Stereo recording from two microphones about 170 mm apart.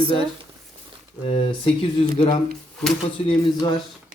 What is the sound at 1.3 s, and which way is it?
A man's voice, 35° left (ahead or behind).